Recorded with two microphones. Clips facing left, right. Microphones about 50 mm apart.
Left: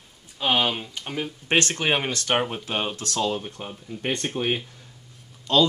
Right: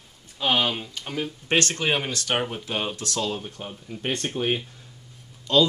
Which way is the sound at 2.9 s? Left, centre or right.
Left.